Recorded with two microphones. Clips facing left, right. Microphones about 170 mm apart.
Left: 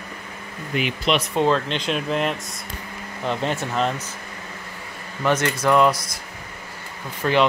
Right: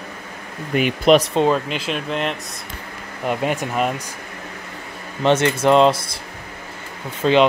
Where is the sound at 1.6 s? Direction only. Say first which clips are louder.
Even; 5° right (ahead or behind).